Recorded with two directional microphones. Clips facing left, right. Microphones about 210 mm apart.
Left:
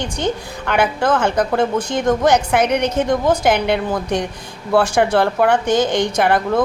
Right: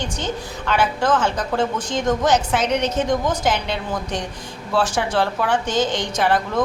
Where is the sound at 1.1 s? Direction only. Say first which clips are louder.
Left 4 dB; 60° left (ahead or behind).